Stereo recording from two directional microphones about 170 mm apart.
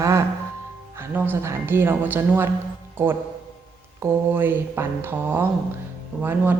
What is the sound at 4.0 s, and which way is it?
Speech, 15° right (ahead or behind).